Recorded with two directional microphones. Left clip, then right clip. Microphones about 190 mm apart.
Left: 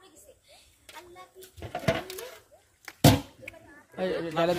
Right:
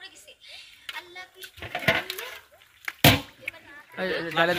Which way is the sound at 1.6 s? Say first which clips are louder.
Right 5 dB; 20° left (ahead or behind).